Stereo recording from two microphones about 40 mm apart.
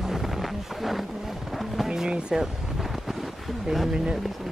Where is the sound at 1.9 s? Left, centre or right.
Centre.